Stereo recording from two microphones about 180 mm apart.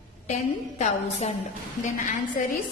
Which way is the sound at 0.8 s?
40° left (ahead or behind).